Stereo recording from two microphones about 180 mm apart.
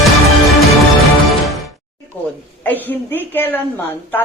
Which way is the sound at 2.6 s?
10° left (ahead or behind).